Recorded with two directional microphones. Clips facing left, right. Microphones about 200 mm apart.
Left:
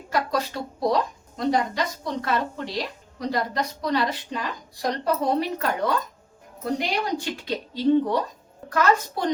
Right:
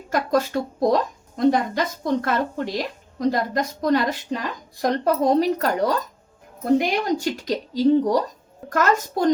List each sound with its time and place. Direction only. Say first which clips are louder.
0.1 s a woman's voice: right 5 dB; 50° right (ahead or behind)
6.7 s a woman's voice: right 4 dB; 50° right (ahead or behind)